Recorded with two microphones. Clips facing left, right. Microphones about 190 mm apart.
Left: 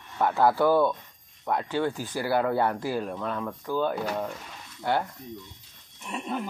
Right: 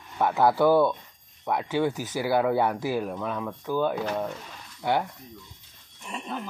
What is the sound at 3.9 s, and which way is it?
Speech, 5° left (ahead or behind).